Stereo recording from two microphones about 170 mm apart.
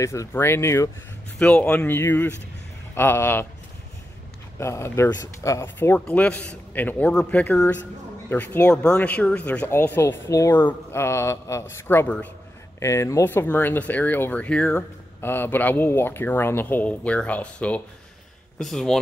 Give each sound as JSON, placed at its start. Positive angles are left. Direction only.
{"t": 0.0, "sound": "speech", "side_deg": 15}
{"t": 4.6, "sound": "speech", "side_deg": 15}